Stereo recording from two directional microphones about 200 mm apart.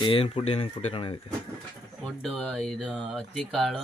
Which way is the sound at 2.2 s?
5° left (ahead or behind).